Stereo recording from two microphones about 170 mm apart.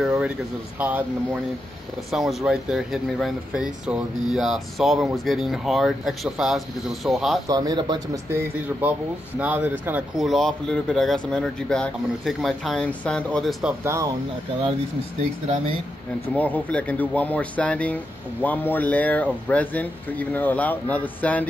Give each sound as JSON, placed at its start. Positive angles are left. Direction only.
{"t": 0.7, "sound": "speech", "side_deg": -10}
{"t": 7.4, "sound": "speech", "side_deg": -25}
{"t": 13.8, "sound": "speech", "side_deg": -20}
{"t": 16.3, "sound": "speech", "side_deg": 10}